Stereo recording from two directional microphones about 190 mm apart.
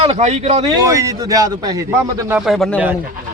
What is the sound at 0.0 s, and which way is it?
Speech, 35° right (ahead or behind).